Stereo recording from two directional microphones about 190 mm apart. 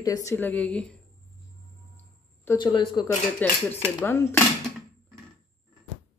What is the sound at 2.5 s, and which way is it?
Speech, 25° left (ahead or behind).